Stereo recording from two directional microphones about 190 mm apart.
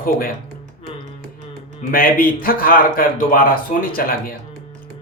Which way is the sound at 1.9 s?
50° left (ahead or behind).